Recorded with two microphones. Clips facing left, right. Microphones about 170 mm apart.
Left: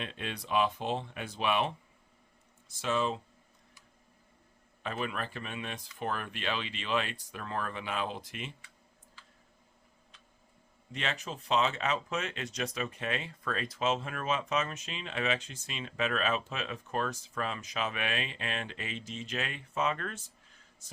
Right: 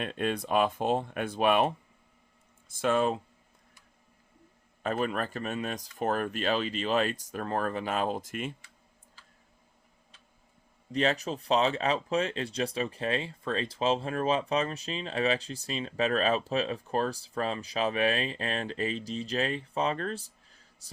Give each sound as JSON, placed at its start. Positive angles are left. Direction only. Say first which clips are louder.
{"t": 0.0, "sound": "speech", "louder": "right 9 dB", "side_deg": -50}
{"t": 4.8, "sound": "speech", "louder": "right 6 dB", "side_deg": -45}
{"t": 10.9, "sound": "speech", "louder": "right 9 dB", "side_deg": -35}